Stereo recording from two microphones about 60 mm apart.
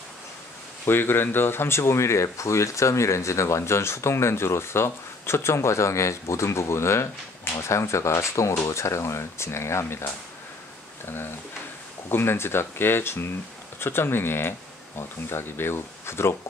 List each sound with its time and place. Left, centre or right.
0.8 s speech: left
12.1 s speech: left